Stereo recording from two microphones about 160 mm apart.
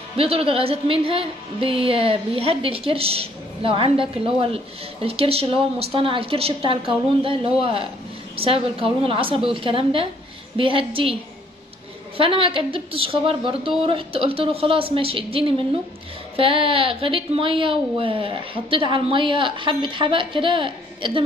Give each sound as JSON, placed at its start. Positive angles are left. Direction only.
{"t": 0.2, "sound": "a woman's voice", "side_deg": -35}
{"t": 12.2, "sound": "a woman's voice", "side_deg": -35}